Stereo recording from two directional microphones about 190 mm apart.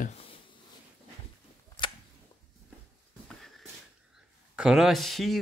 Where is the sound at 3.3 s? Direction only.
Centre (ahead or behind).